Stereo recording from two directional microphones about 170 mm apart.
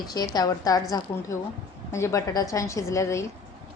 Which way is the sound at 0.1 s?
25° left (ahead or behind).